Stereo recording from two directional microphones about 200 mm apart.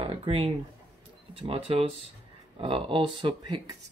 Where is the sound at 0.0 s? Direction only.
25° right (ahead or behind).